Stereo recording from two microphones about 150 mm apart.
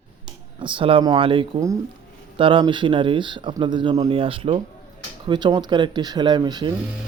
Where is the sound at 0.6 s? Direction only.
35° right (ahead or behind).